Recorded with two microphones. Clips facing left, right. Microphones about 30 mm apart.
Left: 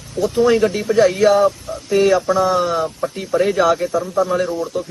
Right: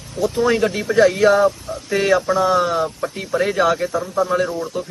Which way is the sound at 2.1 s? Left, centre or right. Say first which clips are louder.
Right 2 dB; centre.